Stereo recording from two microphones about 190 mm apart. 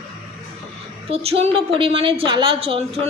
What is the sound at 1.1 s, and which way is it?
A woman's voice, 30° right (ahead or behind).